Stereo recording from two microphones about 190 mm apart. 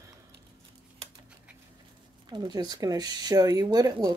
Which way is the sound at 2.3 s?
20° right (ahead or behind).